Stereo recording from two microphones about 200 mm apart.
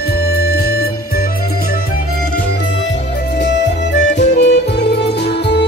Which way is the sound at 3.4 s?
60° left (ahead or behind).